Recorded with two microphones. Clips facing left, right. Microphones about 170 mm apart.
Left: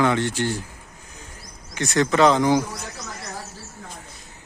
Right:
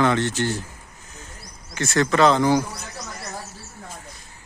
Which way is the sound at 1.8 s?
15° left (ahead or behind).